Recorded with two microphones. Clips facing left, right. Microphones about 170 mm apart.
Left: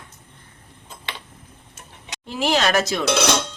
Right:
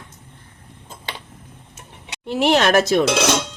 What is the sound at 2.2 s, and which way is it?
Speech, 65° right (ahead or behind).